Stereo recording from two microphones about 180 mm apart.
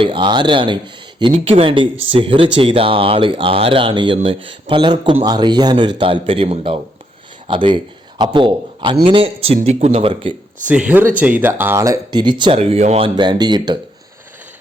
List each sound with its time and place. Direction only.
0.0 s speech: 30° right (ahead or behind)
10.7 s speech: 10° right (ahead or behind); by 13.7 s 25° right (ahead or behind)